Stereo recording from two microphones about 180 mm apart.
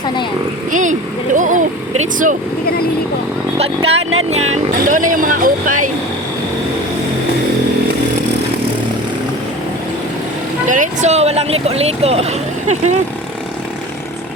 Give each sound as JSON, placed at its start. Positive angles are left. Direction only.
{"t": 0.7, "sound": "speech", "side_deg": -45}
{"t": 3.6, "sound": "speech", "side_deg": -35}
{"t": 10.7, "sound": "speech", "side_deg": -40}